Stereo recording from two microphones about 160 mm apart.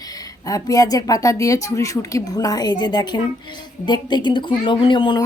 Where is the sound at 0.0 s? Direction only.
25° left (ahead or behind).